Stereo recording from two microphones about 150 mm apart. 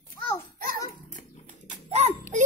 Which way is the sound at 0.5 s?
65° right (ahead or behind).